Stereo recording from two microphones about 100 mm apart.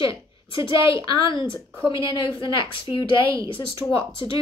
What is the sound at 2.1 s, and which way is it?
A woman's voice, 55° left (ahead or behind).